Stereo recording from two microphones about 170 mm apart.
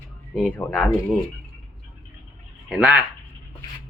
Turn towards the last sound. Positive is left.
turn(degrees=-5)  # may be behind; listen again after turning